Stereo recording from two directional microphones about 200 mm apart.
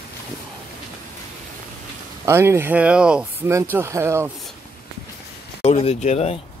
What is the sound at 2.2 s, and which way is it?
Speech, 10° right (ahead or behind).